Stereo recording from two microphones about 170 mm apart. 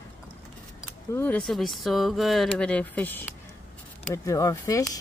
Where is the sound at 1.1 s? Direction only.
10° left (ahead or behind).